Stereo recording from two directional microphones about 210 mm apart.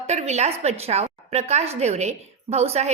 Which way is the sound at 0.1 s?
30° right (ahead or behind).